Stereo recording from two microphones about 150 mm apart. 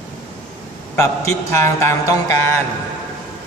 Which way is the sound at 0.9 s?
20° left (ahead or behind).